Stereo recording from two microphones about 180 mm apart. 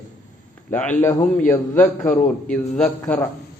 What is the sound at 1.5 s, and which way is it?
A man's voice, 10° left (ahead or behind).